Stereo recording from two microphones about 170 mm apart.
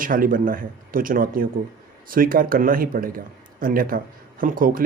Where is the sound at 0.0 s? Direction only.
55° right (ahead or behind).